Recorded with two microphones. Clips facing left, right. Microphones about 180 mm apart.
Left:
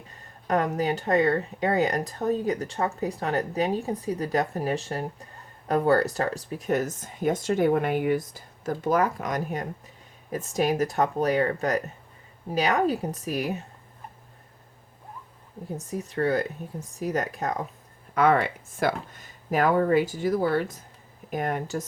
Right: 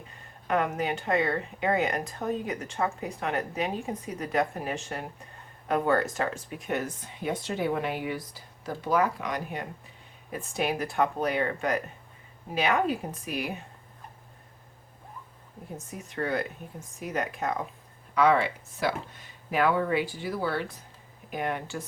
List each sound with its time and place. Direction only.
0.1 s speech: 35° left (ahead or behind)
15.9 s speech: 40° left (ahead or behind)
18.1 s speech: 50° left (ahead or behind)